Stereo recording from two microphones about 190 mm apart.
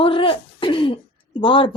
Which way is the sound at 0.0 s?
25° left (ahead or behind).